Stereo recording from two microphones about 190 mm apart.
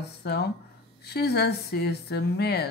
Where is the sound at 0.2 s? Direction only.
60° left (ahead or behind).